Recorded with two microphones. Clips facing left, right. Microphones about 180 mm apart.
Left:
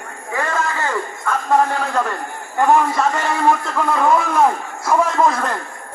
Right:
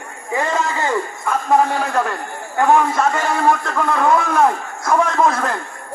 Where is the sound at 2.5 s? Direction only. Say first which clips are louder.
Even; centre (ahead or behind).